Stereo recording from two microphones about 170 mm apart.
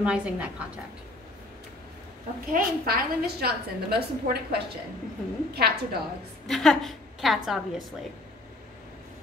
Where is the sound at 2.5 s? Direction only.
60° right (ahead or behind).